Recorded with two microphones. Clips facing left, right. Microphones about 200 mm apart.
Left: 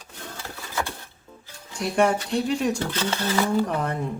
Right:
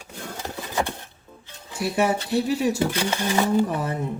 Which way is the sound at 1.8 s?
5° right (ahead or behind).